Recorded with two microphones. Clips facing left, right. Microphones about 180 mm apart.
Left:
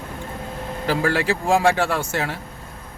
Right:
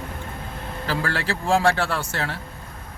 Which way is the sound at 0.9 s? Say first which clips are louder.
Left 6 dB; 15° left (ahead or behind).